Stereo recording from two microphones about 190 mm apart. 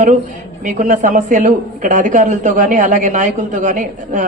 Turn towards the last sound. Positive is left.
turn(degrees=-45)  # may be behind; listen again after turning